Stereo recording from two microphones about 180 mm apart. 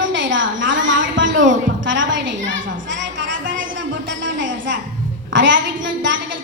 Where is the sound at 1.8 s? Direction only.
90° right.